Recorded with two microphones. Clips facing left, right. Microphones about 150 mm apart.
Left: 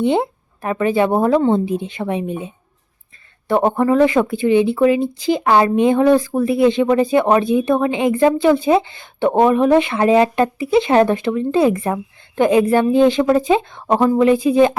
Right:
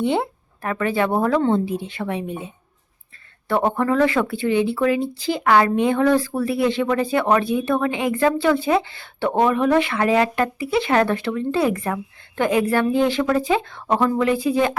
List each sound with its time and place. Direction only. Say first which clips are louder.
0.0 s speech: left 4 dB; 20° left (ahead or behind)
3.5 s speech: left 4 dB; 15° left (ahead or behind)